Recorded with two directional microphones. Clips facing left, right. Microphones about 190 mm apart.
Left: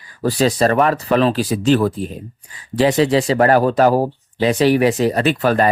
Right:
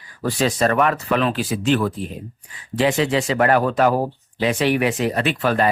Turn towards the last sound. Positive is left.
turn(degrees=40)  # may be behind; listen again after turning